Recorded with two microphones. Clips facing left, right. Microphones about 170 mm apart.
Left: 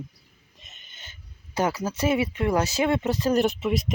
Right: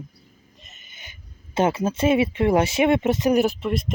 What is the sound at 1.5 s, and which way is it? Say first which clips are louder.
Speech: right 4 dB; 25° right (ahead or behind).